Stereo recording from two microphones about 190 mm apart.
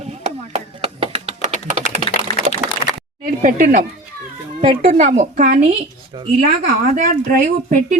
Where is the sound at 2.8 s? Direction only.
35° left (ahead or behind).